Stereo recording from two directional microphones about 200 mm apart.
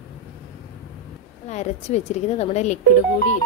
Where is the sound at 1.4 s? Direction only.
35° left (ahead or behind).